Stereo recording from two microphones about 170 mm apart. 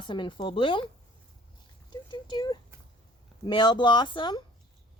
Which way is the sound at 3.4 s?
25° left (ahead or behind).